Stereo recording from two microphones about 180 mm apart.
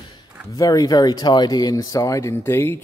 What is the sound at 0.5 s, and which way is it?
Speech, 20° left (ahead or behind).